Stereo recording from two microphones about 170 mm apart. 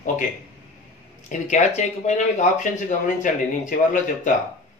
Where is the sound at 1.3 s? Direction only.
45° left (ahead or behind).